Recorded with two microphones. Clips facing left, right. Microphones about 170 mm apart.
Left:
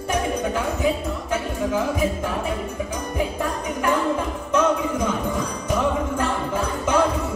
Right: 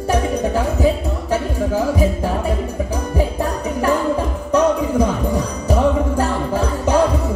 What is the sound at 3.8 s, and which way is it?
Music, 35° right (ahead or behind).